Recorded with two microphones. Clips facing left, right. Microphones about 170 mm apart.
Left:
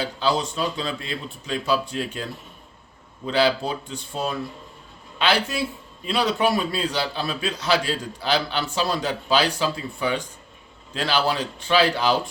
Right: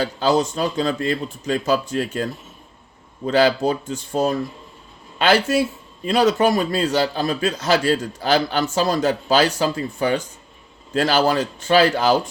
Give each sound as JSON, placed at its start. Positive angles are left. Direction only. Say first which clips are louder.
{"t": 0.0, "sound": "a man's voice", "louder": "right 5 dB", "side_deg": -45}